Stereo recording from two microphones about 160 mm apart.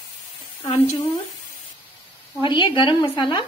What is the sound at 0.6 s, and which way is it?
Speech, 35° left (ahead or behind).